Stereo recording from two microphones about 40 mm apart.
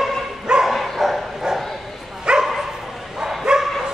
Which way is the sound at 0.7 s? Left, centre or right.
Centre.